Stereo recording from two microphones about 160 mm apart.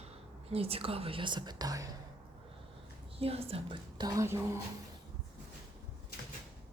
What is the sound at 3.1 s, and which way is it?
Speech, 35° right (ahead or behind).